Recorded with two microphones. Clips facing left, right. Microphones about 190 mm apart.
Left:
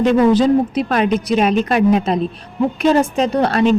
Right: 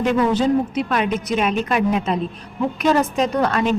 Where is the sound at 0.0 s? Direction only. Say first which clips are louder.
Left 5 dB; 35° left (ahead or behind).